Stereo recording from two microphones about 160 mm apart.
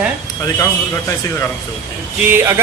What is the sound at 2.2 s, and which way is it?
Speech, 15° right (ahead or behind).